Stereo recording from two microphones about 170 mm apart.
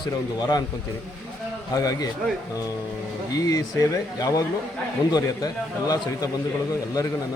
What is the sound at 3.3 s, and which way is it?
A man's voice, 20° left (ahead or behind).